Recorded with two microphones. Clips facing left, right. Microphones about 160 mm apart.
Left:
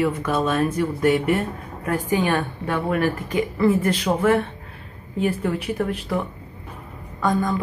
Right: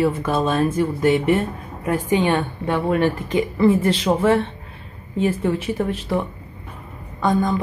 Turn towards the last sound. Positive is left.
turn(degrees=-20)  # may be behind; listen again after turning